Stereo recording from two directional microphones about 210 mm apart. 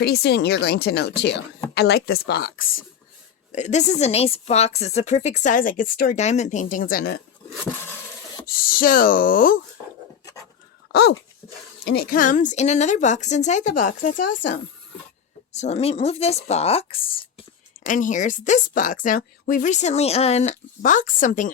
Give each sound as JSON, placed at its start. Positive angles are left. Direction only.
{"t": 0.0, "sound": "speech", "side_deg": 50}
{"t": 3.5, "sound": "a woman's voice", "side_deg": 35}
{"t": 7.6, "sound": "a sound", "side_deg": 10}
{"t": 8.6, "sound": "a woman's voice", "side_deg": 40}
{"t": 11.9, "sound": "a woman's voice", "side_deg": 45}
{"t": 17.8, "sound": "a woman's voice", "side_deg": 40}